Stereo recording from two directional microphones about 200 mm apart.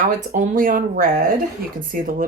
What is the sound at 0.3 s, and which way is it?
Speech, 40° right (ahead or behind).